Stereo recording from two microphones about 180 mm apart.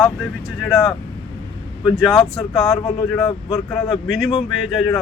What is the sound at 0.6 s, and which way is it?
Speech, 5° right (ahead or behind).